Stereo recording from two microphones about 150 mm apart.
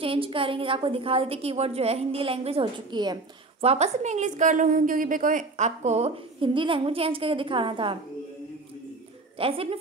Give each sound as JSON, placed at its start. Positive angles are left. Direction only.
{"t": 0.0, "sound": "a woman's voice", "side_deg": -35}
{"t": 3.6, "sound": "a woman's voice", "side_deg": -45}
{"t": 9.4, "sound": "a woman's voice", "side_deg": -40}